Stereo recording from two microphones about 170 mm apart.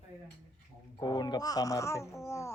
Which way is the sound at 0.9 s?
25° left (ahead or behind).